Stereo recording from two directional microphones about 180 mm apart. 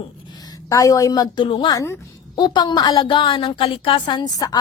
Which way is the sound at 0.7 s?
20° left (ahead or behind).